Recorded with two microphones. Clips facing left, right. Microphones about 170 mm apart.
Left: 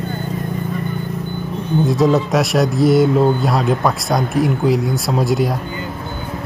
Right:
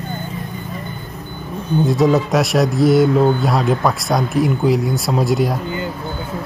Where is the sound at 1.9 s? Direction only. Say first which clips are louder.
Even; centre (ahead or behind).